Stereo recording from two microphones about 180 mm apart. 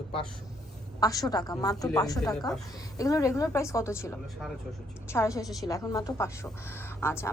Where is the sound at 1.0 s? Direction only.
20° left (ahead or behind).